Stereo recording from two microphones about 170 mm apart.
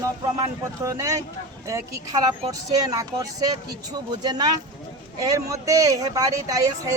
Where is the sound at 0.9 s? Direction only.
20° right (ahead or behind).